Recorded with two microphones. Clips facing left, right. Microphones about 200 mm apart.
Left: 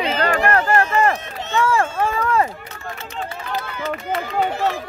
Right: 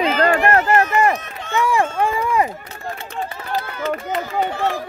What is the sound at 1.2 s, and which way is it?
Speech, 25° left (ahead or behind).